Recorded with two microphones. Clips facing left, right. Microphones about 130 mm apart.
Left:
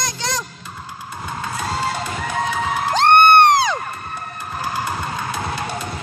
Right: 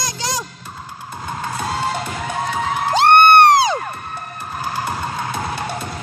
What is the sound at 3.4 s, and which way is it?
Music, 30° right (ahead or behind).